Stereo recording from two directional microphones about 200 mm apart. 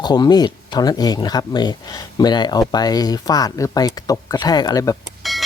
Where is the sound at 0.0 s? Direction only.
20° left (ahead or behind).